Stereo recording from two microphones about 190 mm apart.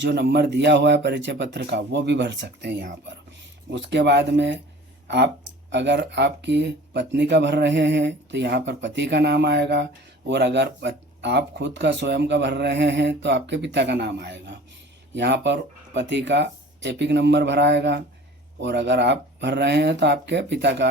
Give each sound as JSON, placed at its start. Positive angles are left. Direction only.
{"t": 0.0, "sound": "speech", "side_deg": -60}